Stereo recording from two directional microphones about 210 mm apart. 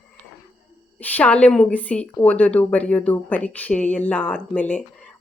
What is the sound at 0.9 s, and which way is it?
A woman's voice, 10° left (ahead or behind).